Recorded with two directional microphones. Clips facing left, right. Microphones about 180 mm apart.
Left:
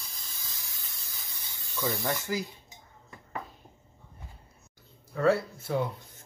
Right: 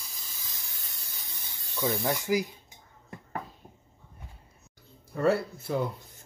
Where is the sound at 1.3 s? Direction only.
20° right (ahead or behind).